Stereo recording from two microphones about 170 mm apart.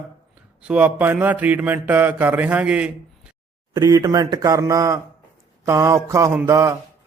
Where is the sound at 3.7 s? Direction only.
25° right (ahead or behind).